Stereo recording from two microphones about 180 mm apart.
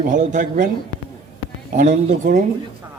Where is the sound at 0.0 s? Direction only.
45° right (ahead or behind).